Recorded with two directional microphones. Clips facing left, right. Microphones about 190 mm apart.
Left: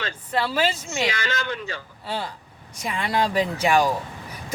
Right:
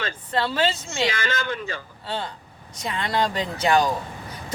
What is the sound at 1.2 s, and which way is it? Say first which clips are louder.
Speech: right 1 dB; 45° right (ahead or behind).